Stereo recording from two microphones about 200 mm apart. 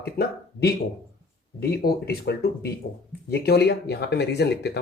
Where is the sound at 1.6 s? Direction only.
50° left (ahead or behind).